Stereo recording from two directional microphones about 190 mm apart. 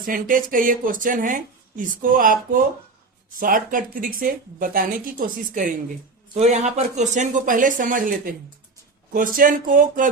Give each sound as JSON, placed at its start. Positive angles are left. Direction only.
{"t": 0.0, "sound": "speech", "side_deg": -45}